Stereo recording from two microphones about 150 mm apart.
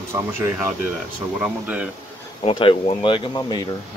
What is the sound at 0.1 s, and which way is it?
Speech, 15° right (ahead or behind).